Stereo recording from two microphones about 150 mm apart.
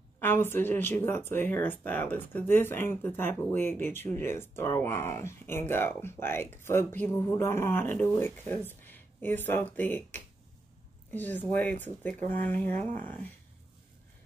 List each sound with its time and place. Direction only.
0.2 s speech: 15° left (ahead or behind)